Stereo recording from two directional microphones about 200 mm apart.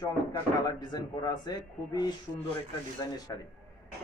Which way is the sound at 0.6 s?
20° left (ahead or behind).